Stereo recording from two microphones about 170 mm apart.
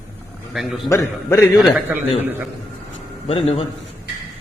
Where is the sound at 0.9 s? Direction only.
15° left (ahead or behind).